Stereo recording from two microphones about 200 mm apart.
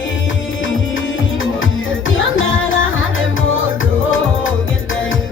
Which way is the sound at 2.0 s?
80° left.